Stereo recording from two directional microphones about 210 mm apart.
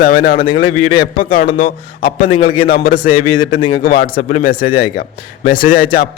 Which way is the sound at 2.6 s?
45° left (ahead or behind).